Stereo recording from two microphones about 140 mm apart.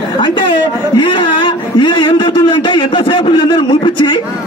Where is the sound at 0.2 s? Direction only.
35° left (ahead or behind).